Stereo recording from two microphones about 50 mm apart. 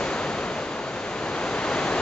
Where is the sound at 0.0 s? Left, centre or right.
Centre.